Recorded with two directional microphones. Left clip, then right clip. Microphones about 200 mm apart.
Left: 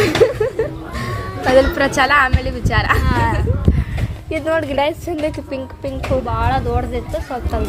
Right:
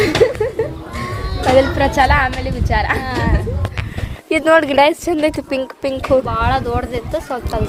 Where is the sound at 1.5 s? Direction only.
5° right (ahead or behind).